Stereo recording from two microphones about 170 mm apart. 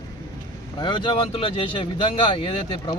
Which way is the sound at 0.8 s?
30° left (ahead or behind).